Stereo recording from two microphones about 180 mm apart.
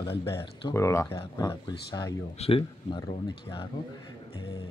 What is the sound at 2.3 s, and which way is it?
Speech, 30° left (ahead or behind).